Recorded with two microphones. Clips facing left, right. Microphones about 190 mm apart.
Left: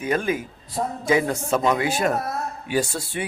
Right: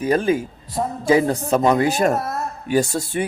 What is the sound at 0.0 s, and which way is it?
A man's voice, 35° right (ahead or behind).